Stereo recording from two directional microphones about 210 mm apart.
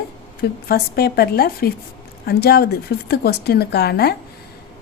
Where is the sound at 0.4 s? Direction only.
50° left (ahead or behind).